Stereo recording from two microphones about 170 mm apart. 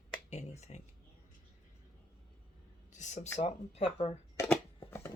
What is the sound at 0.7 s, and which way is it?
Speech, 40° left (ahead or behind).